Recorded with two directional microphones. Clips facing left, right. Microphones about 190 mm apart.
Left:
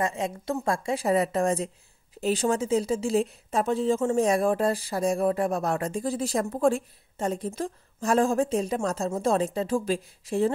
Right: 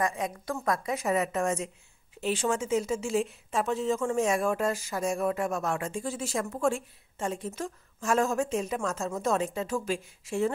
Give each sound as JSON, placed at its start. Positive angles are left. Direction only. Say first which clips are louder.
{"t": 0.0, "sound": "speech", "louder": "left 2 dB", "side_deg": 25}